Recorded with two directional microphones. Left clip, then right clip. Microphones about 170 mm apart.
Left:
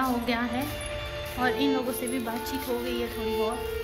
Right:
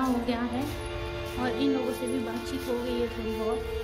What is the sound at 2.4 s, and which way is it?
Speech, 20° left (ahead or behind).